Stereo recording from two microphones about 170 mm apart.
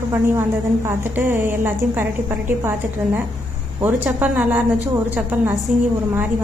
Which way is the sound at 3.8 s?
10° right (ahead or behind).